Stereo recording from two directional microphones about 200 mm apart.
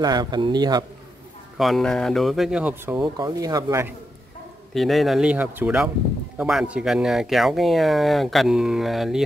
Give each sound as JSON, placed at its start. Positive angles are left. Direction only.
{"t": 0.0, "sound": "speech", "side_deg": -20}
{"t": 1.6, "sound": "speech", "side_deg": 0}
{"t": 4.7, "sound": "speech", "side_deg": 0}